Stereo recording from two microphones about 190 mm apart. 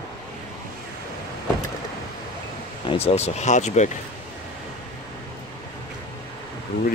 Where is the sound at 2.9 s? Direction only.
30° left (ahead or behind).